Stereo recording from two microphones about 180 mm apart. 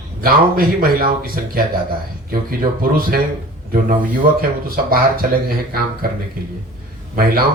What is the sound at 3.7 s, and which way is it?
Speech, 50° right (ahead or behind).